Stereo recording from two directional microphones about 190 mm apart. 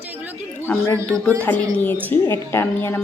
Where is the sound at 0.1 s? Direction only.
10° right (ahead or behind).